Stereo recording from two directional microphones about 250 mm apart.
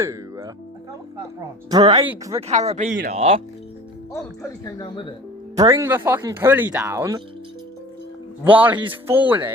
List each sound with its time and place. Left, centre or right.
0.0 s speech: centre
1.8 s speech: centre
2.5 s speech: right
4.6 s speech: centre
5.5 s speech: centre
8.4 s speech: centre